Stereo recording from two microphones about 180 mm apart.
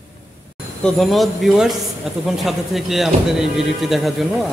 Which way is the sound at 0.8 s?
Centre (ahead or behind).